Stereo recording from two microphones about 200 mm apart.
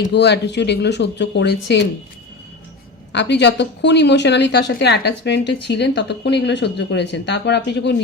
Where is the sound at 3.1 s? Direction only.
60° left (ahead or behind).